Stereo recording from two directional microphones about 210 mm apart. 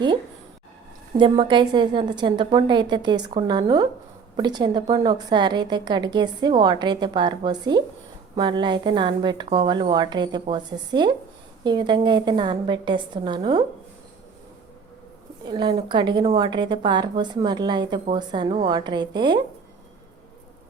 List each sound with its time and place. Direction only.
1.1 s a woman's voice: 25° right (ahead or behind)
15.4 s a woman's voice: 20° right (ahead or behind)